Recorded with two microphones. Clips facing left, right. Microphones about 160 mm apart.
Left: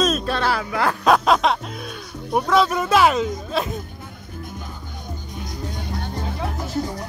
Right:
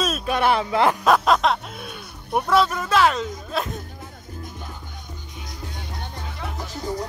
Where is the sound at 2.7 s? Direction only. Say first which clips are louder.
Left 3 dB; 10° left (ahead or behind).